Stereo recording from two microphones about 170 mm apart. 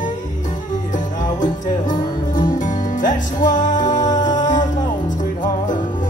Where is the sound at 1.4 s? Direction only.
50° left (ahead or behind).